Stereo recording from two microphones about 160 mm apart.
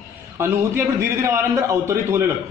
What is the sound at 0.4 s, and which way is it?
A man's voice, 15° right (ahead or behind).